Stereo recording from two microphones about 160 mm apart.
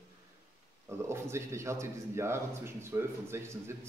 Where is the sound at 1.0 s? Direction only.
15° right (ahead or behind).